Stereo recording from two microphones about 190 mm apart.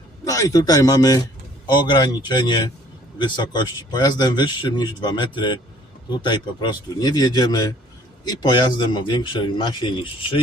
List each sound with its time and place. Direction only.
0.3 s a man's voice: 20° left (ahead or behind)